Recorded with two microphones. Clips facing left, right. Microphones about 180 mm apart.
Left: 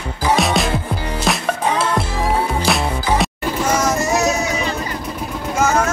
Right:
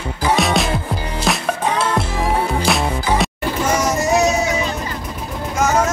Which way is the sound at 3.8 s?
15° right (ahead or behind).